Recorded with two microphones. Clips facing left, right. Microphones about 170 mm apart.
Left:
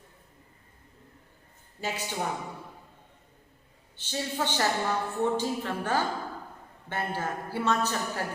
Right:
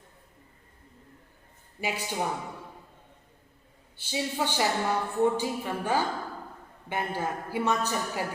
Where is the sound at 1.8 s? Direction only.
15° right (ahead or behind).